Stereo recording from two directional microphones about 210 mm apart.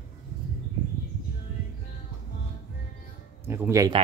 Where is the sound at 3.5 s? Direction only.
10° right (ahead or behind).